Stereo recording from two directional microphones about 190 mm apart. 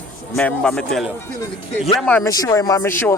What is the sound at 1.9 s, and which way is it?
Speech, 5° left (ahead or behind).